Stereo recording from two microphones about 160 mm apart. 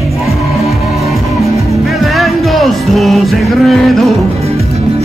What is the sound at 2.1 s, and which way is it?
Music, centre (ahead or behind).